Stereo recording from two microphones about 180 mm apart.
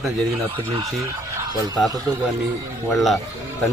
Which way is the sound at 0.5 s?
30° right (ahead or behind).